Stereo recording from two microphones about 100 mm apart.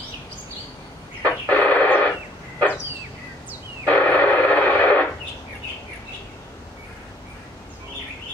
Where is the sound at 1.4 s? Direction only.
15° left (ahead or behind).